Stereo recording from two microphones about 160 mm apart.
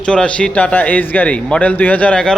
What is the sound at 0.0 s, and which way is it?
A man's voice, 5° left (ahead or behind).